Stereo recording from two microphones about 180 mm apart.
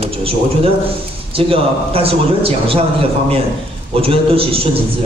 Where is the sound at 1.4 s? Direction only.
30° right (ahead or behind).